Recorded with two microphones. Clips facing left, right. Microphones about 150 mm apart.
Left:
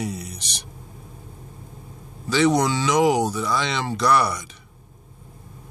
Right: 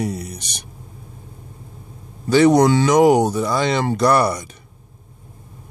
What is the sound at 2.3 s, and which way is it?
Speech, 50° right (ahead or behind).